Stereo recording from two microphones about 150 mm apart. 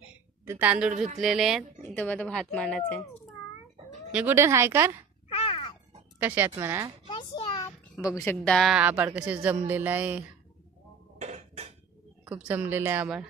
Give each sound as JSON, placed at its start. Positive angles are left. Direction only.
{"t": 0.0, "sound": "a sound", "side_deg": -10}
{"t": 0.9, "sound": "speech", "side_deg": -50}
{"t": 1.2, "sound": "speech", "side_deg": 0}
{"t": 4.1, "sound": "a woman's voice", "side_deg": -10}
{"t": 5.3, "sound": "cat", "side_deg": 35}
{"t": 6.1, "sound": "speech", "side_deg": -10}
{"t": 7.1, "sound": "a sound", "side_deg": 25}
{"t": 8.2, "sound": "speech", "side_deg": 15}
{"t": 8.5, "sound": "a woman's voice", "side_deg": 0}
{"t": 11.1, "sound": "a sound", "side_deg": -45}
{"t": 12.3, "sound": "a woman's voice", "side_deg": -10}